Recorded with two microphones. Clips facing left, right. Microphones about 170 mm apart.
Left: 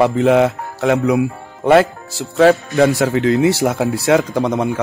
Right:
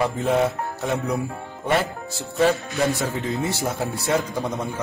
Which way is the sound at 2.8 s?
90° left.